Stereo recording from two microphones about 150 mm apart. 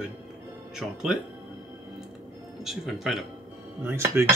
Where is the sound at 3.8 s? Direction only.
15° right (ahead or behind).